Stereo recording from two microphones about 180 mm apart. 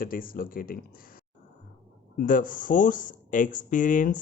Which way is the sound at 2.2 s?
50° left (ahead or behind).